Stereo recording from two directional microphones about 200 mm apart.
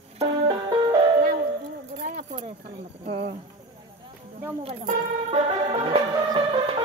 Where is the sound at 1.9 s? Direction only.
40° right (ahead or behind).